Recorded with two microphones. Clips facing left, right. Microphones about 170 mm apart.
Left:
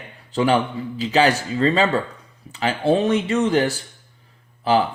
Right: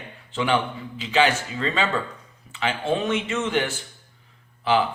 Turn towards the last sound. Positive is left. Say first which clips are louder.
# left 3 dB
turn(degrees=40)  # may be behind; listen again after turning